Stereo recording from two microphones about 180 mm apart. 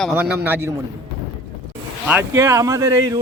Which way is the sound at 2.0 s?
15° right (ahead or behind).